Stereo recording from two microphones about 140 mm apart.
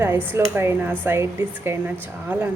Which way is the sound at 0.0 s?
15° right (ahead or behind).